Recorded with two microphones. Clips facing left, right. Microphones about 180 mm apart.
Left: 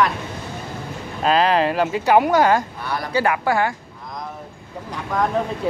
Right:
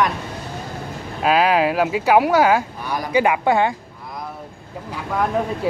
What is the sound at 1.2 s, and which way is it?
Speech, 5° right (ahead or behind).